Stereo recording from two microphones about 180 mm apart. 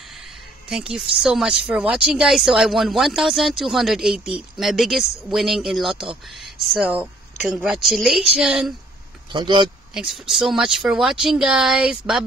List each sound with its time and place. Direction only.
0.0 s a sound: centre (ahead or behind)
1.1 s speech: 5° right (ahead or behind)
9.3 s speech: 25° right (ahead or behind)
9.9 s speech: 5° right (ahead or behind)